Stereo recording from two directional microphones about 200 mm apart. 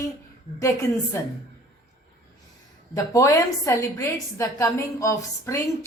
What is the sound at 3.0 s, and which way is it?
A woman's voice, 15° left (ahead or behind).